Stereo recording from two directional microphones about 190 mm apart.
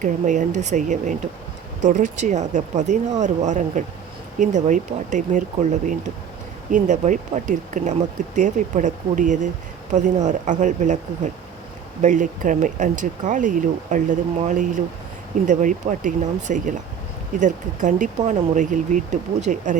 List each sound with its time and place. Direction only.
0.0 s speech: 40° right (ahead or behind)